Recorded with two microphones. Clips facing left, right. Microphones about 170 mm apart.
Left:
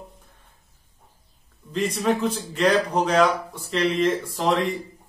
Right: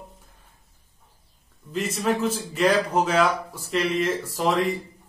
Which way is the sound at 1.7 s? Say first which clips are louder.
Left 2 dB; 5° right (ahead or behind).